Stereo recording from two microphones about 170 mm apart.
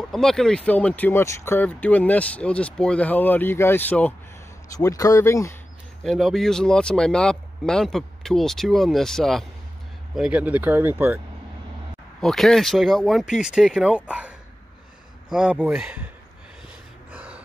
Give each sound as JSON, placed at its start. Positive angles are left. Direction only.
{"t": 0.1, "sound": "speech", "side_deg": 0}
{"t": 4.7, "sound": "speech", "side_deg": 20}
{"t": 6.0, "sound": "speech", "side_deg": 0}
{"t": 12.2, "sound": "speech", "side_deg": 0}
{"t": 15.3, "sound": "speech", "side_deg": -5}
{"t": 17.1, "sound": "gasp", "side_deg": -10}